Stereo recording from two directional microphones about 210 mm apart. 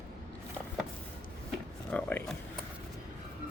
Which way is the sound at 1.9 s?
5° left (ahead or behind).